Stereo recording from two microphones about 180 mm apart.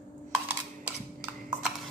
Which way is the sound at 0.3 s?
5° right (ahead or behind).